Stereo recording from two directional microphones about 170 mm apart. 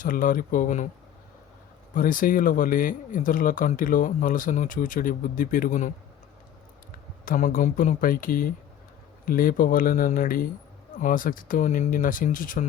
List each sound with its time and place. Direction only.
0.0 s speech: 55° left (ahead or behind)
2.0 s speech: 55° left (ahead or behind)
7.3 s speech: 50° left (ahead or behind)